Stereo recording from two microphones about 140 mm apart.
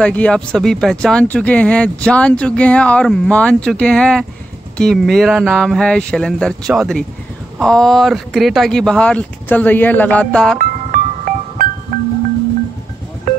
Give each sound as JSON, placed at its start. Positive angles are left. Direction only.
{"t": 0.0, "sound": "speech", "side_deg": 10}
{"t": 10.6, "sound": "music", "side_deg": -75}